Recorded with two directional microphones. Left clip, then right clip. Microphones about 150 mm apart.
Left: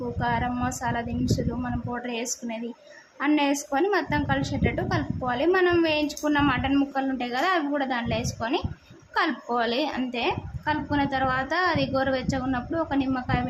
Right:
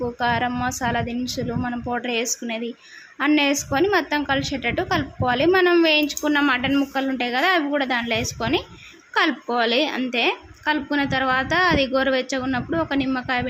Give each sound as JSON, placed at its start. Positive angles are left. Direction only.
{"t": 0.2, "sound": "a woman's voice", "side_deg": -15}